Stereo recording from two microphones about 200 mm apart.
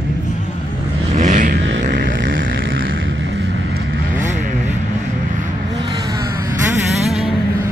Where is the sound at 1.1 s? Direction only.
40° right (ahead or behind).